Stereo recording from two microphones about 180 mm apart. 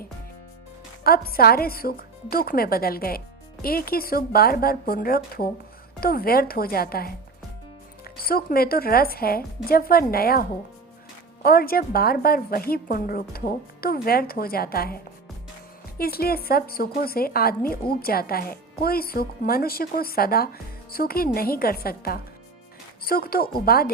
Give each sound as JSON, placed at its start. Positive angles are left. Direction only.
{"t": 1.0, "sound": "speech", "side_deg": 55}
{"t": 11.4, "sound": "speech", "side_deg": 55}
{"t": 16.0, "sound": "speech", "side_deg": 55}